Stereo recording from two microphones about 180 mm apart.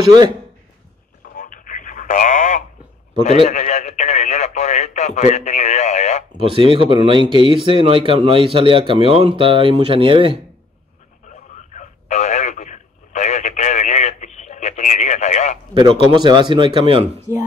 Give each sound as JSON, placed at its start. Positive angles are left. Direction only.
{"t": 1.3, "sound": "radio", "side_deg": 50}
{"t": 3.4, "sound": "speech", "side_deg": 40}
{"t": 6.5, "sound": "speech", "side_deg": -30}
{"t": 11.2, "sound": "radio", "side_deg": 45}
{"t": 15.7, "sound": "speech", "side_deg": -25}